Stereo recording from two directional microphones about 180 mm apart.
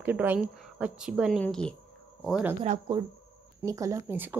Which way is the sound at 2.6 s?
30° right (ahead or behind).